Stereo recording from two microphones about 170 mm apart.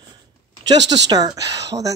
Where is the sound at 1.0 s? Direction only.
25° right (ahead or behind).